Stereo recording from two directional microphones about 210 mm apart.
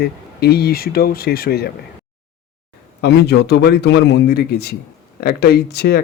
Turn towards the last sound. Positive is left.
turn(degrees=50)  # may be behind; listen again after turning